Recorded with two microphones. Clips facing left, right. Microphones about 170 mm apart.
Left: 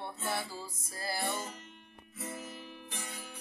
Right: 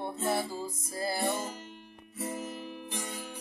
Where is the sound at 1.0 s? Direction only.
20° right (ahead or behind).